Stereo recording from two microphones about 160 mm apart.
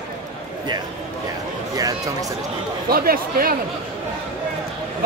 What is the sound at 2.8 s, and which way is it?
Speech, 70° right (ahead or behind).